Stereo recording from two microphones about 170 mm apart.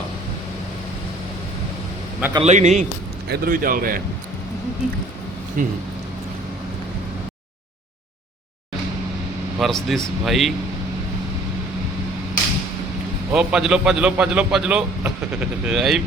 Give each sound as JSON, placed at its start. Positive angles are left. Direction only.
{"t": 2.4, "sound": "a man's voice", "side_deg": -45}
{"t": 3.2, "sound": "speech", "side_deg": -65}
{"t": 5.6, "sound": "speech", "side_deg": -55}
{"t": 9.6, "sound": "a man's voice", "side_deg": 0}
{"t": 13.3, "sound": "a man's voice", "side_deg": -5}